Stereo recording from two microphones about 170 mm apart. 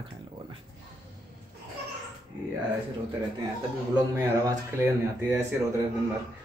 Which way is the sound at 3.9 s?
15° right (ahead or behind).